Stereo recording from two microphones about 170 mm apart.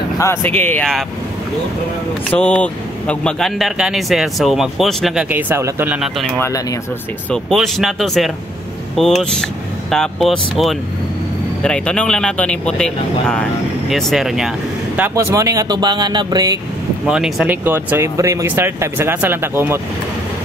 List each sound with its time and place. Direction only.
0.2 s speech: 15° left (ahead or behind)
2.3 s speech: 5° left (ahead or behind)
5.3 s speech: 10° right (ahead or behind)
7.2 s speech: centre (ahead or behind)
15.0 s speech: 15° right (ahead or behind)
17.0 s speech: 5° right (ahead or behind)